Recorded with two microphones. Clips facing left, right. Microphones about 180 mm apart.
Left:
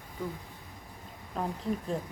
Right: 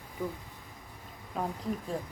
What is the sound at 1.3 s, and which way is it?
Speech, 5° right (ahead or behind).